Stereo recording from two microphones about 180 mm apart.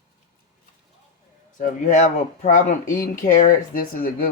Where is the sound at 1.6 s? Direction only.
45° left (ahead or behind).